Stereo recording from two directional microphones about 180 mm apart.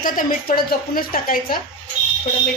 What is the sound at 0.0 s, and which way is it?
A woman's voice, 50° left (ahead or behind).